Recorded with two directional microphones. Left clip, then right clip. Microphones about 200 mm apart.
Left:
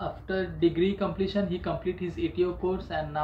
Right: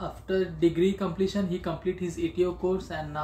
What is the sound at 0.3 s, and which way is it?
Speech, 20° right (ahead or behind).